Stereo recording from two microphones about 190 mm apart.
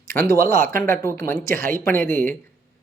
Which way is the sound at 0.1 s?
15° left (ahead or behind).